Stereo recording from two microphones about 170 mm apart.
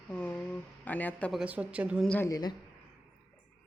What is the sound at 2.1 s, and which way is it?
Speech, 15° left (ahead or behind).